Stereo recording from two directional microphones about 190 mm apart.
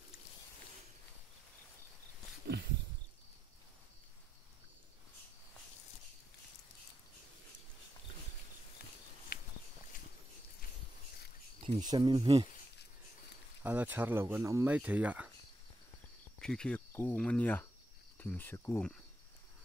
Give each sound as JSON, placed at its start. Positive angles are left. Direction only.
{"t": 2.4, "sound": "a sound", "side_deg": -60}
{"t": 9.3, "sound": "walk", "side_deg": 55}
{"t": 11.6, "sound": "speech", "side_deg": -25}
{"t": 13.6, "sound": "speech", "side_deg": -10}
{"t": 16.3, "sound": "speech", "side_deg": 5}
{"t": 18.2, "sound": "cricket", "side_deg": 10}